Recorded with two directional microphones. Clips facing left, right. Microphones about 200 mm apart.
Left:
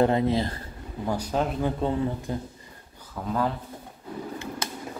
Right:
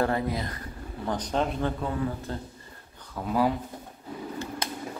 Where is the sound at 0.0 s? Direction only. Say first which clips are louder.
Left 5 dB; 20° left (ahead or behind).